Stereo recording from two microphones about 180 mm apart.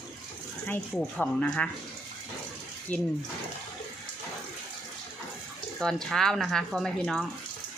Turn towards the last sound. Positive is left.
turn(degrees=0)  # may be behind; listen again after turning